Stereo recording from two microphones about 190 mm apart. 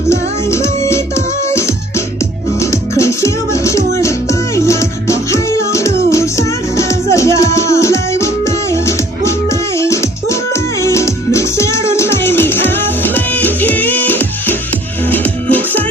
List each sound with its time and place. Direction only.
0.1 s music: 15° left (ahead or behind)